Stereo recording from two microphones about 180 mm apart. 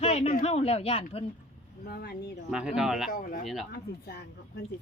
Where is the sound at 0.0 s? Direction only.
35° left (ahead or behind).